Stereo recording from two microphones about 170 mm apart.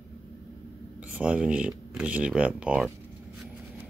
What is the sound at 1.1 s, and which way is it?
Speech, 5° right (ahead or behind).